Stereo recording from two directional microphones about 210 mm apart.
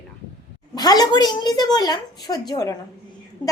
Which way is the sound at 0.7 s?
20° left (ahead or behind).